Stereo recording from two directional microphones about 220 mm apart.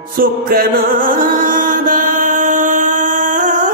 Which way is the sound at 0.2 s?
40° right (ahead or behind).